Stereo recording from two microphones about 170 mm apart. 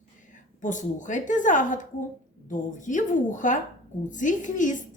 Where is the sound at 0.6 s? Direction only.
50° left (ahead or behind).